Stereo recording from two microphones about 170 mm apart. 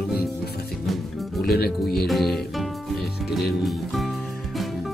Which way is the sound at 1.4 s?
65° left (ahead or behind).